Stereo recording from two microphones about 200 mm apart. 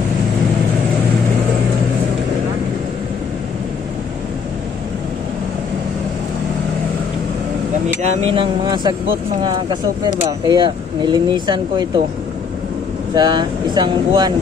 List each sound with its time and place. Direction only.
8.0 s speech: 25° right (ahead or behind)
13.1 s speech: 20° right (ahead or behind)